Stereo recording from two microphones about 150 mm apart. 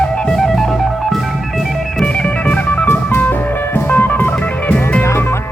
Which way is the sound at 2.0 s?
5° left (ahead or behind).